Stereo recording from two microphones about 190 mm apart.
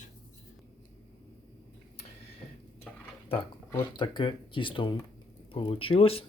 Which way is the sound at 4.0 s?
25° left (ahead or behind).